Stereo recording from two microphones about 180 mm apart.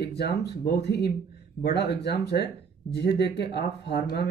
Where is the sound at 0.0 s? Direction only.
65° left (ahead or behind).